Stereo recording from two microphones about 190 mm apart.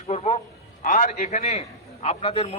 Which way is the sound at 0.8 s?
45° left (ahead or behind).